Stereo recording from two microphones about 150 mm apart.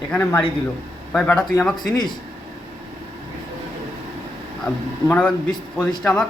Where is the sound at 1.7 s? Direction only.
30° left (ahead or behind).